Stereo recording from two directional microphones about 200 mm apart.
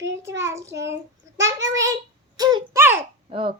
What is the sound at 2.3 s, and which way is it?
Speech, 20° right (ahead or behind).